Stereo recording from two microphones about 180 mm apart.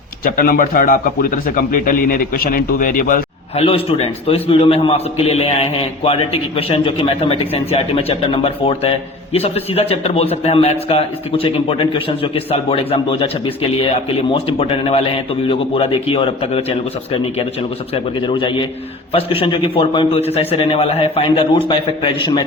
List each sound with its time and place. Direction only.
0.3 s a man's voice: 50° left (ahead or behind)
3.5 s a man's voice: 30° left (ahead or behind)